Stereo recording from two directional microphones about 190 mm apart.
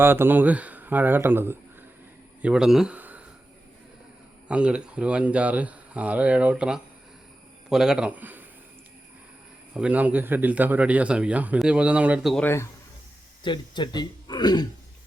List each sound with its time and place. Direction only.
0.0 s speech: 10° right (ahead or behind)
4.4 s a man's voice: 5° right (ahead or behind)
9.7 s speech: 5° right (ahead or behind)
13.4 s speech: 25° left (ahead or behind)